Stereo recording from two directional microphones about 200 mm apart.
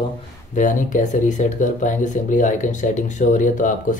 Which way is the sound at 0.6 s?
40° left (ahead or behind).